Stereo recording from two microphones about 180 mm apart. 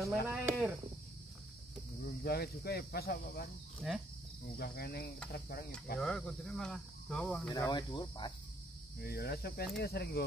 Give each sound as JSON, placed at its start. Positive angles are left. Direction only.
{"t": 0.0, "sound": "speech", "side_deg": -5}
{"t": 2.2, "sound": "speech", "side_deg": 60}
{"t": 3.8, "sound": "speech", "side_deg": 0}
{"t": 4.6, "sound": "speech", "side_deg": 60}
{"t": 5.9, "sound": "speech", "side_deg": 5}
{"t": 7.4, "sound": "speech", "side_deg": 20}
{"t": 9.0, "sound": "speech", "side_deg": 60}